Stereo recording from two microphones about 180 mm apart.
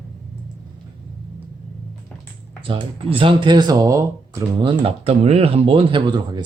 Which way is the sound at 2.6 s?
30° right (ahead or behind).